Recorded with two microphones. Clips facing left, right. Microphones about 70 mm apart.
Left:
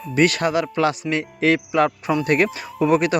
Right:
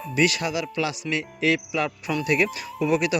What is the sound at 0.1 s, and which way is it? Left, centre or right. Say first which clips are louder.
Speech: left 5 dB; left.